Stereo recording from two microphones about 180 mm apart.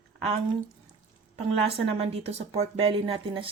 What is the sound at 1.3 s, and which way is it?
Speech, 35° right (ahead or behind).